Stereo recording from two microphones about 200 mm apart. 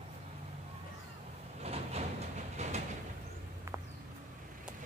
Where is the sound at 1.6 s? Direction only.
30° right (ahead or behind).